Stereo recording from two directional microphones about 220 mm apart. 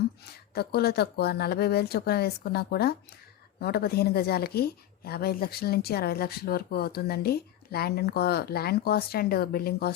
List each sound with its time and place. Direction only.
0.5 s a woman's voice: 45° left (ahead or behind)